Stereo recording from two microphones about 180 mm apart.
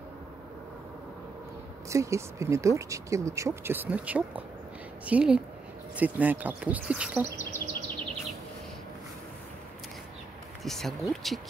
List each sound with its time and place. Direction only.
1.9 s speech: 15° right (ahead or behind)
10.6 s speech: centre (ahead or behind)